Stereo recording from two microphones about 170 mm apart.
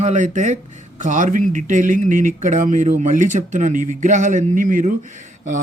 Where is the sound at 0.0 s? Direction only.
45° right (ahead or behind).